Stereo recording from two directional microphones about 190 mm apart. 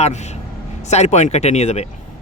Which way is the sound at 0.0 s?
35° left (ahead or behind).